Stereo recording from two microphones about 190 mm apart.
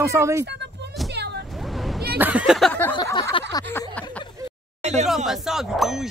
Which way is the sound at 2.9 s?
25° left (ahead or behind).